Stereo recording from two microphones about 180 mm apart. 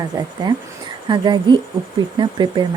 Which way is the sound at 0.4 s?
25° right (ahead or behind).